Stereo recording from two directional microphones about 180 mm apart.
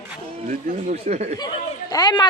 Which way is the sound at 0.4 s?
40° right (ahead or behind).